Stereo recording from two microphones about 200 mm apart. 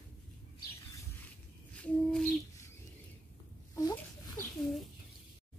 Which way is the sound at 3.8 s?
20° left (ahead or behind).